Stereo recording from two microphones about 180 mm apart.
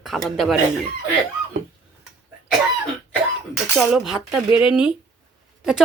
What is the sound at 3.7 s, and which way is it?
Speech, centre (ahead or behind).